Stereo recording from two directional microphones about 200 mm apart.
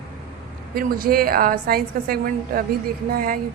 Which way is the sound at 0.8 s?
45° right (ahead or behind).